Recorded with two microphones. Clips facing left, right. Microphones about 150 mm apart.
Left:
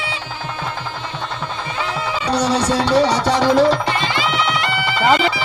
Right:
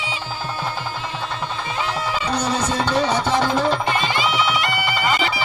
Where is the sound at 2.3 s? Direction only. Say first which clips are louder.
Left 6 dB; 80° left.